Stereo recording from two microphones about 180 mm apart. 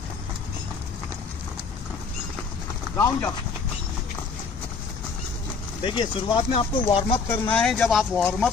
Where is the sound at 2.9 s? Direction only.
15° left (ahead or behind).